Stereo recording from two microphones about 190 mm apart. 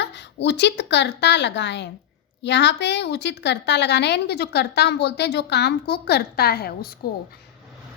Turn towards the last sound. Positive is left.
turn(degrees=55)  # may be behind; listen again after turning